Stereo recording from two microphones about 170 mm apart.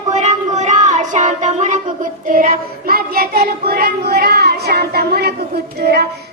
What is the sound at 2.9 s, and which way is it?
Child singing, 60° right (ahead or behind).